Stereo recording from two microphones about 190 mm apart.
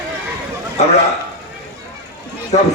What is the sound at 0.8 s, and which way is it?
Speech, 35° left (ahead or behind).